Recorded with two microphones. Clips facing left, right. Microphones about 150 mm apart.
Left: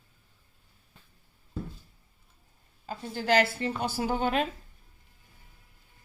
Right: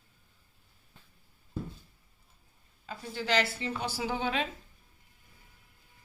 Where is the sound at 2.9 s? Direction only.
45° left (ahead or behind).